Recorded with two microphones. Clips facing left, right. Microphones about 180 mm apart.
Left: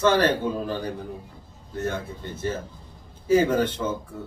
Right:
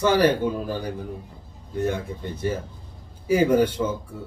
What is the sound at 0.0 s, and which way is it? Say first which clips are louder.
Speech: right 1 dB; 10° right (ahead or behind).